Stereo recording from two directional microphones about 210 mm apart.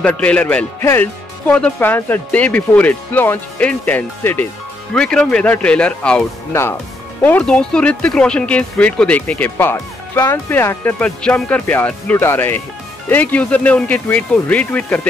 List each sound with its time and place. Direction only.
0.0 s speech: 5° left (ahead or behind)